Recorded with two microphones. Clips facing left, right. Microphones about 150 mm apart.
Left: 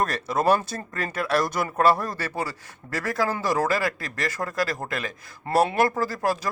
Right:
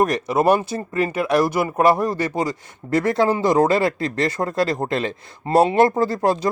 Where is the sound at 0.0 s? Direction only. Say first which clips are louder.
Right 6 dB; 15° right (ahead or behind).